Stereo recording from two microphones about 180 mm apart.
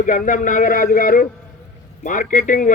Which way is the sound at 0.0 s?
50° left (ahead or behind).